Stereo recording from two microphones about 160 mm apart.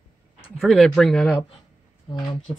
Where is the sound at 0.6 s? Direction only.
Centre (ahead or behind).